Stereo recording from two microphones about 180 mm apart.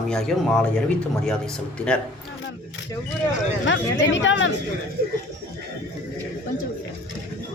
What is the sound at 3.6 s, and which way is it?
Speech, 90° left.